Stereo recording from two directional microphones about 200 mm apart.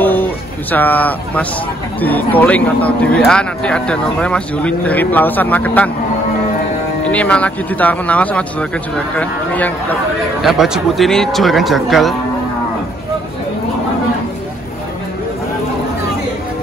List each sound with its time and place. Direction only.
0.0 s a sound: 10° left (ahead or behind)
2.0 s speech: 10° left (ahead or behind)
7.1 s speech: 5° left (ahead or behind)